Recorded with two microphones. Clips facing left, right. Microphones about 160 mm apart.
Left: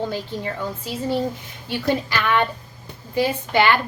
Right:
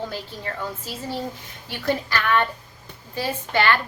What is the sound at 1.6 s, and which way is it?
A woman's voice, 15° left (ahead or behind).